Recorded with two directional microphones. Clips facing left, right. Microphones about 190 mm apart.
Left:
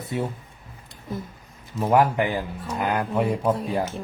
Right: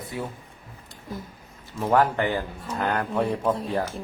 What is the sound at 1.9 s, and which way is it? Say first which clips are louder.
Speech: left 1 dB; 10° left (ahead or behind).